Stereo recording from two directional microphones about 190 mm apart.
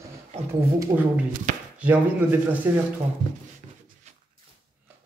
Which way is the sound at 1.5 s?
45° right (ahead or behind).